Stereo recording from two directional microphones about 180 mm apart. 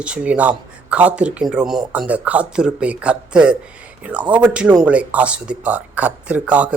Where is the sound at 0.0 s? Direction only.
5° right (ahead or behind).